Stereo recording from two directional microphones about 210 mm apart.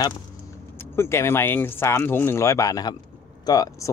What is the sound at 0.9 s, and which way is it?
Speech, 10° left (ahead or behind).